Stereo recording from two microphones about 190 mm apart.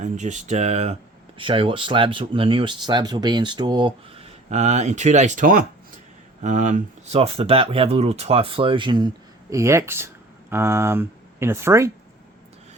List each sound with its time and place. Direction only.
0.0 s speech: 40° right (ahead or behind); by 11.9 s 15° right (ahead or behind)